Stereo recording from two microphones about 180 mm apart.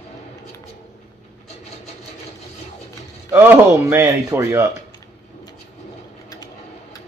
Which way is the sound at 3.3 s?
10° right (ahead or behind).